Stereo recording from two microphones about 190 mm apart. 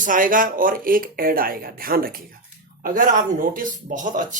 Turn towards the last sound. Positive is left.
turn(degrees=-40)  # may be behind; listen again after turning